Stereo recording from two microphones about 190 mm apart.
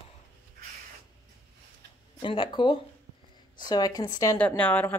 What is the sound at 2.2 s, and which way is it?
A woman's voice, 25° left (ahead or behind).